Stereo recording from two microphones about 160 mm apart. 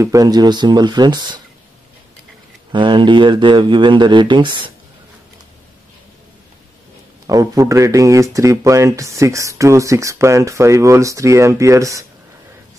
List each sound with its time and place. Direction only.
0.0 s speech: 20° right (ahead or behind)
2.7 s speech: 30° right (ahead or behind)
7.2 s speech: 20° right (ahead or behind)